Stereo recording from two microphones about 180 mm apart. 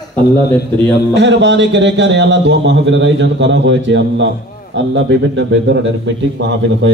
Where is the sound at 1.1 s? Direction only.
80° right.